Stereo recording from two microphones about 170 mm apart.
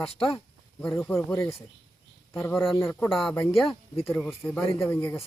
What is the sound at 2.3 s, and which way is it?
Speech, 15° left (ahead or behind).